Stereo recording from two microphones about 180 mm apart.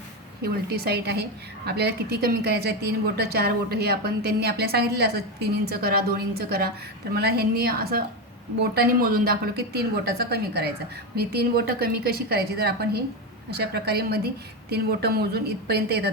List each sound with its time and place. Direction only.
0.4 s a woman's voice: 60° right (ahead or behind)